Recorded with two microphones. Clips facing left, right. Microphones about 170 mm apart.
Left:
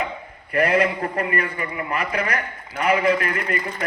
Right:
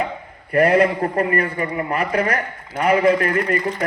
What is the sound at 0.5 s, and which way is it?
A man's voice, 35° right (ahead or behind).